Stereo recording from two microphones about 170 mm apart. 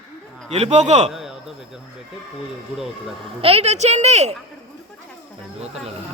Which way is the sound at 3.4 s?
35° right (ahead or behind).